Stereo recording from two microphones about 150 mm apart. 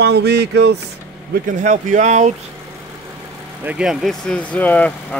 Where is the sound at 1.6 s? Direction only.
55° right (ahead or behind).